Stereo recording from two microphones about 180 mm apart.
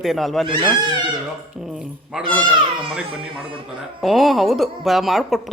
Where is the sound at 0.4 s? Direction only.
25° right (ahead or behind).